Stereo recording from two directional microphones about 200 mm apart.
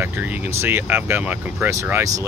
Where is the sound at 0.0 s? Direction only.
10° right (ahead or behind).